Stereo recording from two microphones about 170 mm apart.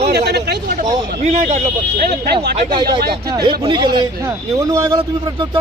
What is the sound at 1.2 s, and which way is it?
Speech, 40° right (ahead or behind).